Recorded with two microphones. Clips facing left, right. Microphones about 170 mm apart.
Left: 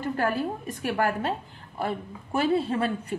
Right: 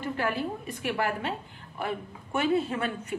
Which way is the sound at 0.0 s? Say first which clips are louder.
Left 3 dB; 45° left (ahead or behind).